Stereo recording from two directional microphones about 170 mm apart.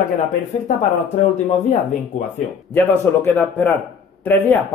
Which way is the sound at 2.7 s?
15° left (ahead or behind).